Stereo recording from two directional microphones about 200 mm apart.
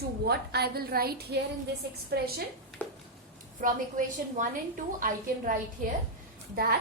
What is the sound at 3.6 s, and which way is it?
A woman's voice, 40° right (ahead or behind).